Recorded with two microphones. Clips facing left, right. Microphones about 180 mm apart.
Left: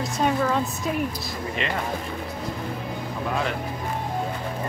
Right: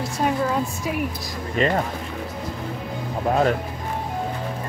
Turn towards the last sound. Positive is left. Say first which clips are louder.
# right 7 dB
turn(degrees=-40)  # may be behind; listen again after turning